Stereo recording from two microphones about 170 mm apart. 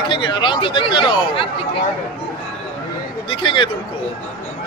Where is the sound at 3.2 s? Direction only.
30° left (ahead or behind).